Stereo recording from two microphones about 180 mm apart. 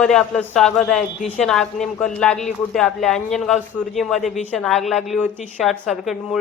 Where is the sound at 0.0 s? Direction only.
5° left (ahead or behind).